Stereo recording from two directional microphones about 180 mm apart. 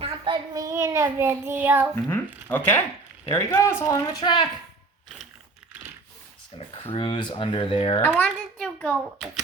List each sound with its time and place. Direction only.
0.0 s a child's voice: 25° right (ahead or behind)
2.0 s a woman's voice: 10° left (ahead or behind)
6.9 s speech: 25° left (ahead or behind)
8.2 s a woman's voice: 10° left (ahead or behind)